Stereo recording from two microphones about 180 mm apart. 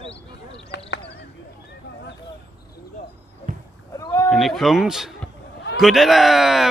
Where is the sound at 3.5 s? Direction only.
45° right (ahead or behind).